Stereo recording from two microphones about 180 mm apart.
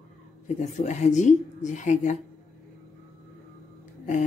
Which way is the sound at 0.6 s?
40° left (ahead or behind).